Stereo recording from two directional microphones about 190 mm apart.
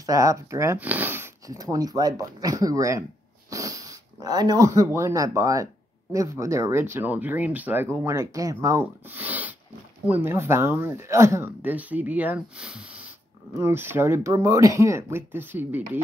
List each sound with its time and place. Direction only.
0.0 s speech: 20° right (ahead or behind)
9.1 s a sound: 10° right (ahead or behind)
10.0 s speech: 10° right (ahead or behind)